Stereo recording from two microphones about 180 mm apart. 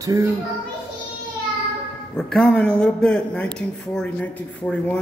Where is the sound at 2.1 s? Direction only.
5° left (ahead or behind).